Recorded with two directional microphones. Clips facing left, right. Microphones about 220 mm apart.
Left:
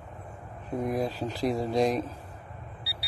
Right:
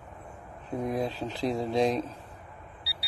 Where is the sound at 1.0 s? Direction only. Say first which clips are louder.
Left 1 dB; 5° left (ahead or behind).